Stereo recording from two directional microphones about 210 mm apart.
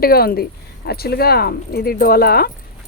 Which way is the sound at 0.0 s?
45° left (ahead or behind).